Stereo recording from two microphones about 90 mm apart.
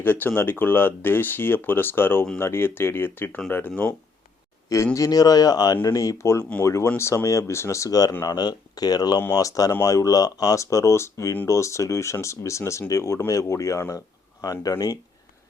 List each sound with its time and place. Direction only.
0.0 s speech: 20° left (ahead or behind)
4.9 s speech: 45° left (ahead or behind)